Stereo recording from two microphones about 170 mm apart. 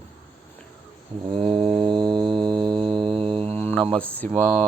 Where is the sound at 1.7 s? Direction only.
30° right (ahead or behind).